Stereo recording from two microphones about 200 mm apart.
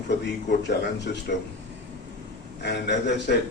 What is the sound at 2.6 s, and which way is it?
Speech, 60° left (ahead or behind).